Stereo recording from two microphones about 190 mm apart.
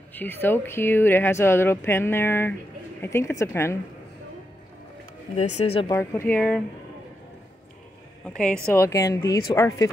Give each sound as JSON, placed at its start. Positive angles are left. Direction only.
{"t": 0.1, "sound": "speech", "side_deg": 10}
{"t": 5.3, "sound": "speech", "side_deg": 35}
{"t": 5.9, "sound": "speech", "side_deg": 15}
{"t": 8.6, "sound": "speech", "side_deg": 15}